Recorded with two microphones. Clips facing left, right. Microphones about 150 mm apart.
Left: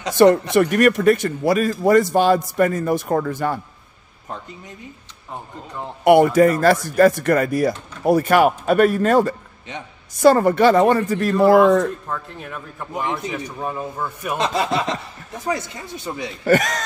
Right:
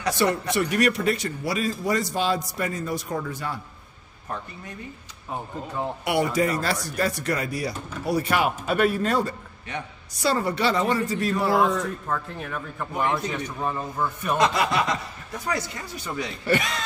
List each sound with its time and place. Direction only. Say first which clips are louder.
0.2 s speech: left 12 dB; 50° left (ahead or behind)
4.3 s speech: left 1 dB; 20° left (ahead or behind)
6.0 s speech: left 11 dB; 55° left (ahead or behind)
12.1 s speech: even; centre (ahead or behind)
13.0 s a man's voice: even; 15° left (ahead or behind)
14.4 s speech: left 2 dB; 25° left (ahead or behind)
16.4 s speech: left 7 dB; 45° left (ahead or behind)